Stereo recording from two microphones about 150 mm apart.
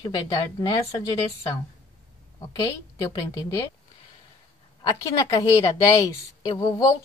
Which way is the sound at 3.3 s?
20° left (ahead or behind).